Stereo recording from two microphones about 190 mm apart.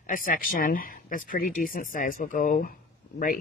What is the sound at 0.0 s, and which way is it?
Speech, 45° left (ahead or behind).